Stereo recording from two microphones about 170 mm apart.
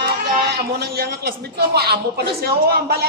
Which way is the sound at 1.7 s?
70° right (ahead or behind).